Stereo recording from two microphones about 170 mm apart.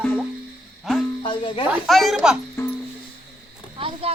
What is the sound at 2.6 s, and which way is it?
Music, 15° left (ahead or behind).